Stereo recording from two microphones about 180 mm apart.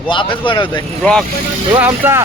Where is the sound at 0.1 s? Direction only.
25° left (ahead or behind).